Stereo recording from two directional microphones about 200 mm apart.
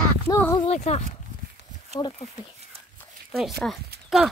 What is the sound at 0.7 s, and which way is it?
Speech, 35° left (ahead or behind).